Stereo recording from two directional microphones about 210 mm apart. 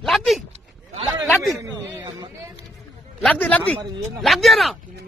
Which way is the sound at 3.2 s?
5° left (ahead or behind).